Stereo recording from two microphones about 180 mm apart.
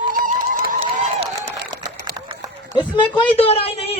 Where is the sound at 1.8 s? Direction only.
25° right (ahead or behind).